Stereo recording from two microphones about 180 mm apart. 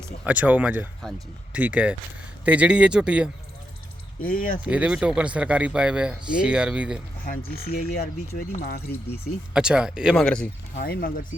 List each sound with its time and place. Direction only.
0.3 s speech: 10° right (ahead or behind)
4.2 s speech: 50° left (ahead or behind)
4.6 s speech: 5° right (ahead or behind)
7.3 s speech: 55° left (ahead or behind)
9.5 s speech: 5° right (ahead or behind)
10.8 s speech: 60° left (ahead or behind)